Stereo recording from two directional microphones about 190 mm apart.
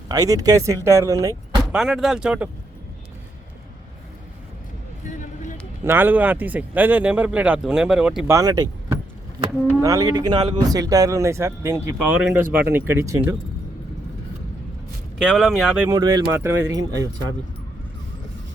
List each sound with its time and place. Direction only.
0.1 s speech: 20° right (ahead or behind)
1.7 s speech: centre (ahead or behind)
5.0 s music: 40° left (ahead or behind)
5.8 s speech: 10° right (ahead or behind)
8.3 s speech: 20° right (ahead or behind)
15.2 s speech: centre (ahead or behind)
16.0 s speech: 20° right (ahead or behind)